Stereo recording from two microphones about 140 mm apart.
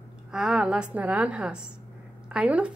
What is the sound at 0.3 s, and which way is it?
A woman's voice, 5° right (ahead or behind).